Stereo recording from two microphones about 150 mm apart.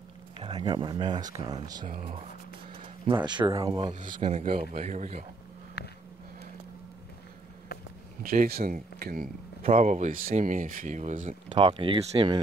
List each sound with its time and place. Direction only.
0.5 s speech: 30° right (ahead or behind)
3.1 s speech: 30° right (ahead or behind)
3.6 s speech: 35° right (ahead or behind)
3.9 s speech: 60° right (ahead or behind)
4.5 s a man's voice: 40° right (ahead or behind)
5.8 s a sound: 90° left
8.2 s speech: 75° right (ahead or behind)
9.0 s speech: 75° right (ahead or behind)
9.6 s speech: 50° right (ahead or behind)
11.4 s speech: 35° right (ahead or behind)